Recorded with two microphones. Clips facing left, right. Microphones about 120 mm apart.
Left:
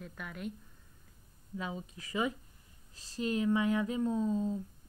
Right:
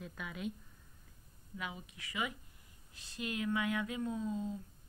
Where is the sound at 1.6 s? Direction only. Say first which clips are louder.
Left 5 dB; 35° left (ahead or behind).